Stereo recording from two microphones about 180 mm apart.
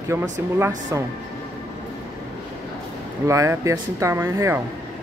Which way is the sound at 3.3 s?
15° right (ahead or behind).